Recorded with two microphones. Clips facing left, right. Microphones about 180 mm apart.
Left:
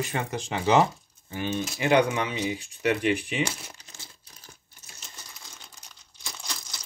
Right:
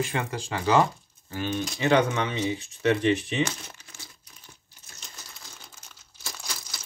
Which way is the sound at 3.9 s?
15° left (ahead or behind).